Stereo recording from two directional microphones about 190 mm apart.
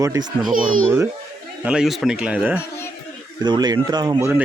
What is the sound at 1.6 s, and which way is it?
Speech, 5° right (ahead or behind).